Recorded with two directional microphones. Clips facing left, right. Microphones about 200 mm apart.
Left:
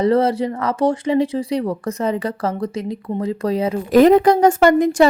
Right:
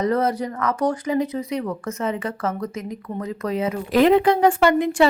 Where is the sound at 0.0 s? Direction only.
30° left (ahead or behind).